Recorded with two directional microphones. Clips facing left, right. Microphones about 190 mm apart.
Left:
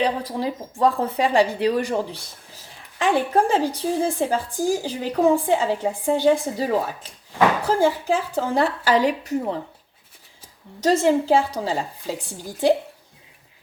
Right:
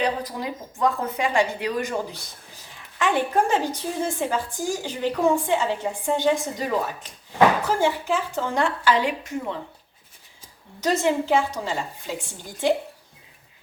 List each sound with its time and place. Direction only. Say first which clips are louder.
0.0 s a woman's voice: left 3 dB; 30° left (ahead or behind)
3.0 s a woman's voice: left 2 dB; 35° left (ahead or behind)
7.8 s a woman's voice: left 3 dB; 35° left (ahead or behind)
10.8 s a woman's voice: left 4 dB; 35° left (ahead or behind)